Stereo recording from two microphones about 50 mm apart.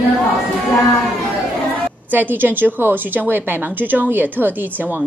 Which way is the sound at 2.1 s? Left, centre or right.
Right.